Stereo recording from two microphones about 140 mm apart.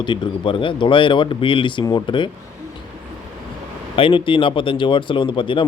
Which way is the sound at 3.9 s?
40° left (ahead or behind).